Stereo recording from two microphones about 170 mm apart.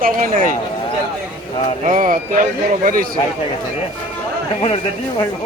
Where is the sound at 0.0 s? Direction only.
55° right (ahead or behind).